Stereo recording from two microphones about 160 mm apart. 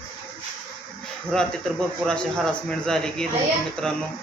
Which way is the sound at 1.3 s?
5° left (ahead or behind).